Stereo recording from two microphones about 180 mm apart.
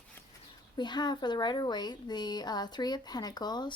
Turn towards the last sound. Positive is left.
turn(degrees=25)  # may be behind; listen again after turning